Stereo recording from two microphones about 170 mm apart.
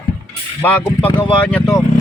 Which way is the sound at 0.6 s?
10° left (ahead or behind).